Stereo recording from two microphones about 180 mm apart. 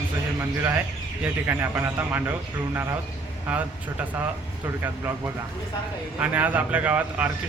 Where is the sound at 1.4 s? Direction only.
10° right (ahead or behind).